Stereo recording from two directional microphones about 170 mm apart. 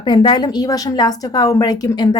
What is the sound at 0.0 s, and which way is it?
A woman's voice, 25° left (ahead or behind).